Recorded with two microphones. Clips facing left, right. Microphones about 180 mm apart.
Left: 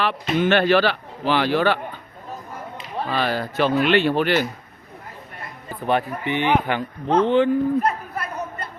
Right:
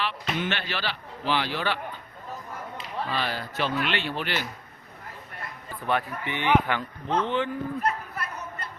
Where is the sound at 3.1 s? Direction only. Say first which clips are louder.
Left 9 dB; 50° left (ahead or behind).